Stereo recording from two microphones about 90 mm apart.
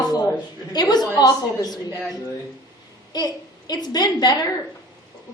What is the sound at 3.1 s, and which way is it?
A woman's voice, 50° left (ahead or behind).